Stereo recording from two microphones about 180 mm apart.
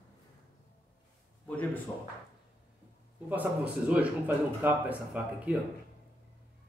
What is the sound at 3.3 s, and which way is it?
Speech, 10° right (ahead or behind).